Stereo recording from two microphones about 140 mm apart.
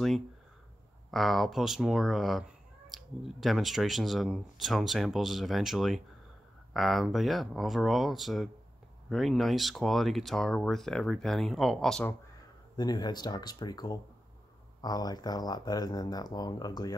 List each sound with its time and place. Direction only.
1.1 s speech: centre (ahead or behind)
12.7 s speech: 30° left (ahead or behind)